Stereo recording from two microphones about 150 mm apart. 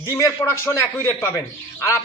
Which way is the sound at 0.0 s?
20° left (ahead or behind).